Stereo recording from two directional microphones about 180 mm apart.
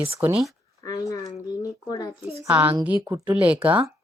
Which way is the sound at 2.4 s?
10° right (ahead or behind).